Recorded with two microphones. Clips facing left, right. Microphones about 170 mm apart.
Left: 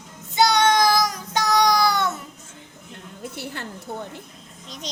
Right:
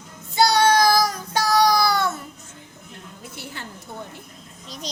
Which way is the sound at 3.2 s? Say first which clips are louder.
Left 5 dB; 55° left (ahead or behind).